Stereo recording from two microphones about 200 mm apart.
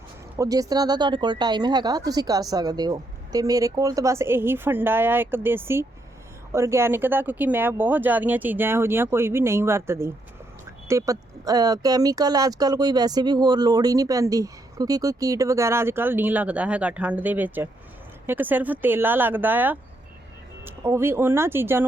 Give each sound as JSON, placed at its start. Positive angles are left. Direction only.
{"t": 0.3, "sound": "speech", "side_deg": -15}